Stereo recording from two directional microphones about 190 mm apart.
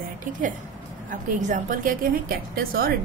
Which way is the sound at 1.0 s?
45° right (ahead or behind).